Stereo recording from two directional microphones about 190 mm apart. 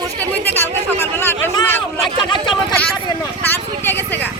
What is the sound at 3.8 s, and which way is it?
Speech, 10° left (ahead or behind).